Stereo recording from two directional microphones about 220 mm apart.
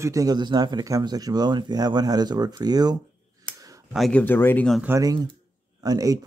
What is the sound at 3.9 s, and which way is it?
Speech, 5° left (ahead or behind).